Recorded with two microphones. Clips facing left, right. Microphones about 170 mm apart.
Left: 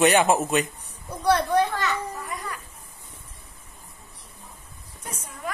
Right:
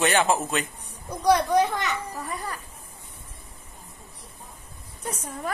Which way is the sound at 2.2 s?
35° right (ahead or behind).